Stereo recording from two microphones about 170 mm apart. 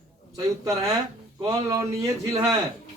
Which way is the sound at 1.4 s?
20° right (ahead or behind).